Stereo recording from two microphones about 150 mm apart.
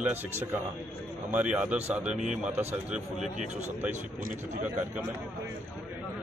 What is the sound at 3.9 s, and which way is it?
Speech, 50° right (ahead or behind).